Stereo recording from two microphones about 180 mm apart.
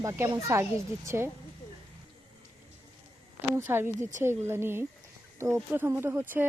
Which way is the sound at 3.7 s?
15° right (ahead or behind).